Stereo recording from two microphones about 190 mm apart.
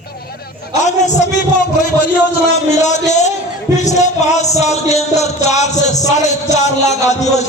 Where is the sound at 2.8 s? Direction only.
40° left (ahead or behind).